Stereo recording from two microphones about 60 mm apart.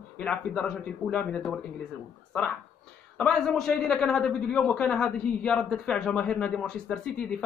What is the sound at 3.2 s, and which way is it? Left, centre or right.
A man's voice, centre.